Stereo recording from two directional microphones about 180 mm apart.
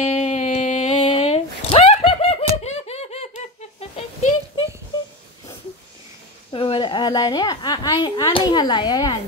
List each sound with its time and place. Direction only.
0.0 s a sound: 40° left (ahead or behind)
2.5 s laughter: 35° left (ahead or behind)
6.5 s a woman's voice: 30° left (ahead or behind)